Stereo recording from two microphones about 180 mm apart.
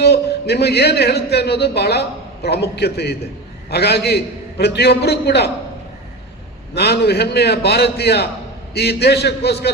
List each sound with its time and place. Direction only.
0.0 s a man's voice: 65° left (ahead or behind)
6.7 s a man's voice: 65° left (ahead or behind)